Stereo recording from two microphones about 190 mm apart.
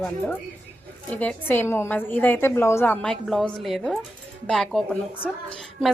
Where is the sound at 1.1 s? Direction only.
10° left (ahead or behind).